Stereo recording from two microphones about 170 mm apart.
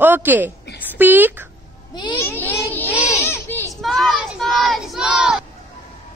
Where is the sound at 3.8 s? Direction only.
Centre (ahead or behind).